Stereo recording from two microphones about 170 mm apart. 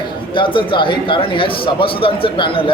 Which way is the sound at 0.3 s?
30° left (ahead or behind).